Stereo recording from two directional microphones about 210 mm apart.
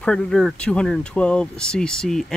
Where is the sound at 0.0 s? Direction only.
5° left (ahead or behind).